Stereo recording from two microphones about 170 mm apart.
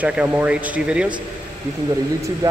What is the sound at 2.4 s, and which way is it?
Speech, 20° right (ahead or behind).